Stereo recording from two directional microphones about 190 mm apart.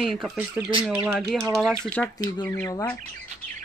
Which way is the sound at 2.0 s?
Centre (ahead or behind).